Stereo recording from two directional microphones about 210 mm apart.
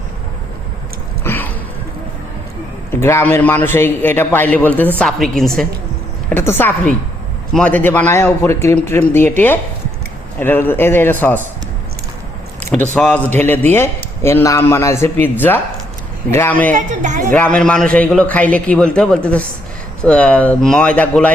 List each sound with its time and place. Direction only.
1.2 s a sound: 10° left (ahead or behind)
2.9 s a man's voice: 10° left (ahead or behind)
10.4 s a man's voice: 10° left (ahead or behind)
12.7 s a man's voice: 5° left (ahead or behind)
16.7 s speech: 35° right (ahead or behind)
17.3 s a man's voice: 5° left (ahead or behind)